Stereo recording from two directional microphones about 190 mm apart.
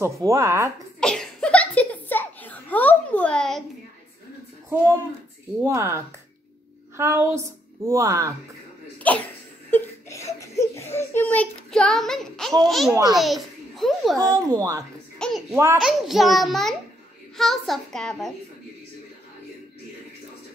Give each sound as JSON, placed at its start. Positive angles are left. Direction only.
{"t": 0.0, "sound": "a woman's voice", "side_deg": -15}
{"t": 1.0, "sound": "a sound", "side_deg": 5}
{"t": 5.6, "sound": "a woman's voice", "side_deg": -15}
{"t": 9.0, "sound": "speech", "side_deg": 10}
{"t": 9.7, "sound": "a sound", "side_deg": 15}
{"t": 12.6, "sound": "a child's voice", "side_deg": 0}
{"t": 14.1, "sound": "a child's voice", "side_deg": -20}
{"t": 15.1, "sound": "child singing", "side_deg": 5}
{"t": 15.5, "sound": "a woman's voice", "side_deg": -15}
{"t": 15.8, "sound": "a child's voice", "side_deg": 0}